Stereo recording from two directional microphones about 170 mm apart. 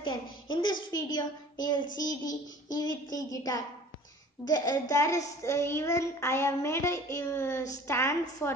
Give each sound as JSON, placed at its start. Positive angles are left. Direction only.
{"t": 0.0, "sound": "a woman's voice", "side_deg": 25}